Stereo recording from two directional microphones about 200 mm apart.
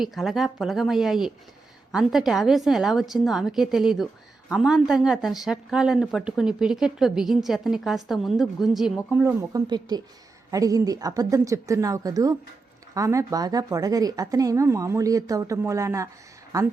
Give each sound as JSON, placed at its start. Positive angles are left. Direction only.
{"t": 0.0, "sound": "a woman's voice", "side_deg": 0}